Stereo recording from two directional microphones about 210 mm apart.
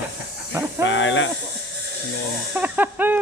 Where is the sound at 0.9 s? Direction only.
65° left (ahead or behind).